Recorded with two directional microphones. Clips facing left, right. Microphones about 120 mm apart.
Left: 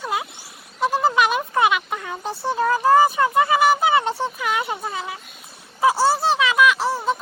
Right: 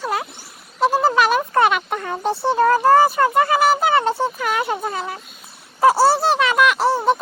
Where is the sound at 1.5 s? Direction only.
5° left (ahead or behind).